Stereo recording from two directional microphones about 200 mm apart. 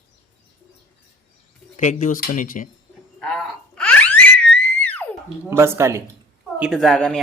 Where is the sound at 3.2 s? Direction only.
Centre (ahead or behind).